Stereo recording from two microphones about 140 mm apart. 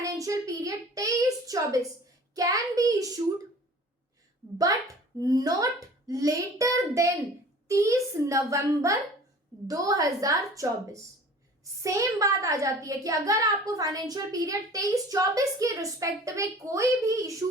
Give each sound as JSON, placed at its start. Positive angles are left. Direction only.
{"t": 0.0, "sound": "a sound", "side_deg": -25}
{"t": 2.3, "sound": "a child's voice", "side_deg": -25}
{"t": 4.5, "sound": "a child's voice", "side_deg": -25}